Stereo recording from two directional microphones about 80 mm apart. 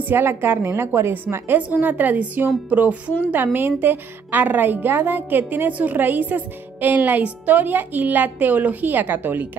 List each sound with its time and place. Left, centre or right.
0.0 s a woman's voice: right